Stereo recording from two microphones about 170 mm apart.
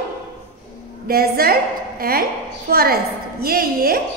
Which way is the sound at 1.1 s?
65° right (ahead or behind).